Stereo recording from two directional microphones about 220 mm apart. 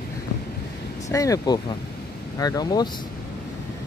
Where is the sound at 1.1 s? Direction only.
15° left (ahead or behind).